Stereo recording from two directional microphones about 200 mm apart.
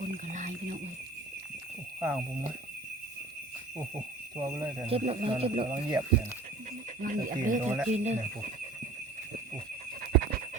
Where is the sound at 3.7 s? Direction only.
20° right (ahead or behind).